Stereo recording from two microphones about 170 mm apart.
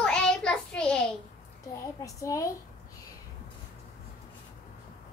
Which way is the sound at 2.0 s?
20° left (ahead or behind).